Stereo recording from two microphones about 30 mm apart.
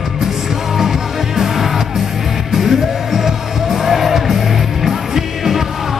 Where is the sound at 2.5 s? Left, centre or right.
Centre.